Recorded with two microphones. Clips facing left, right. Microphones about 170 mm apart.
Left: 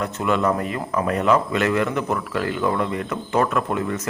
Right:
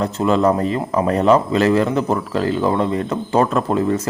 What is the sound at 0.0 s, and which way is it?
Speech, 30° right (ahead or behind).